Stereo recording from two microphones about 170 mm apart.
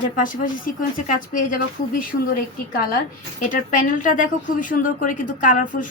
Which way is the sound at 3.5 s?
50° left (ahead or behind).